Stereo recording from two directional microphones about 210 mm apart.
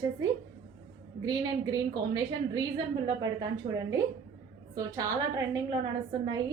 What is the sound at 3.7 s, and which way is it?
Speech, 35° right (ahead or behind).